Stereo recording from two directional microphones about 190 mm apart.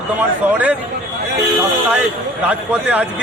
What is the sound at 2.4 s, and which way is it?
Speech, 10° right (ahead or behind).